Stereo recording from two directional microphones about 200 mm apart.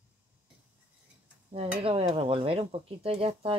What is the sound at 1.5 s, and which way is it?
Speech, 30° right (ahead or behind).